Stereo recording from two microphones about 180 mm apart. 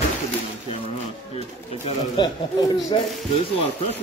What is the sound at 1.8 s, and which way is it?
Speech, 30° left (ahead or behind).